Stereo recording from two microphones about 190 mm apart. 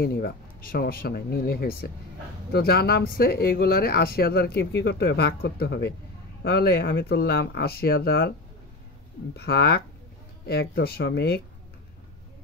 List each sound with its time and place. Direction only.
0.0 s speech: 55° left (ahead or behind)
9.4 s speech: 55° left (ahead or behind)